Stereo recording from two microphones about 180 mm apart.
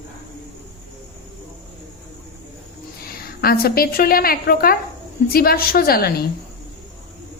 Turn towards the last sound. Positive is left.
turn(degrees=60)  # may be behind; listen again after turning